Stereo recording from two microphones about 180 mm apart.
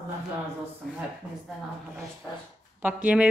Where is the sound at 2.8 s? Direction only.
10° right (ahead or behind).